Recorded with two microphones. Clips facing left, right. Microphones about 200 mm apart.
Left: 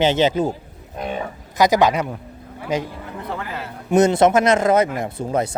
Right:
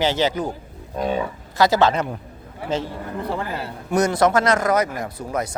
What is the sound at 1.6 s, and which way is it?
Speech, 15° left (ahead or behind).